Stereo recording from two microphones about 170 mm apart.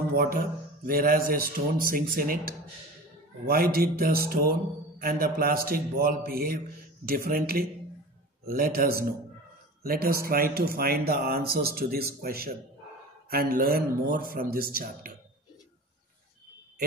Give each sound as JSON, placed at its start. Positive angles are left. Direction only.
{"t": 0.1, "sound": "a man's voice", "side_deg": -60}
{"t": 3.7, "sound": "speech", "side_deg": -60}